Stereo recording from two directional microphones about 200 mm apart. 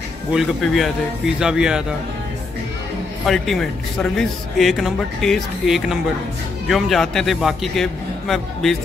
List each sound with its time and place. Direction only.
0.3 s speech: centre (ahead or behind)
3.3 s speech: centre (ahead or behind)